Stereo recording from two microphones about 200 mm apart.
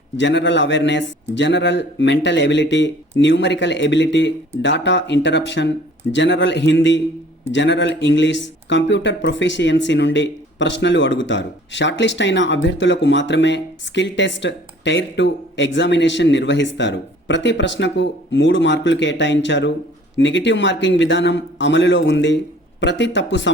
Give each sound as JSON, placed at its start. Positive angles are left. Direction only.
{"t": 0.2, "sound": "speech", "side_deg": 65}